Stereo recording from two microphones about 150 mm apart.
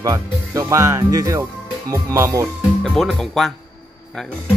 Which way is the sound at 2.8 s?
5° left (ahead or behind).